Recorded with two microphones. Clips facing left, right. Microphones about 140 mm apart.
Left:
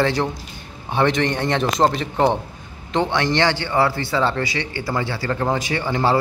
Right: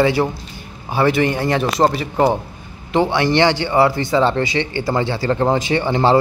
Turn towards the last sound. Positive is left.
turn(degrees=-25)  # may be behind; listen again after turning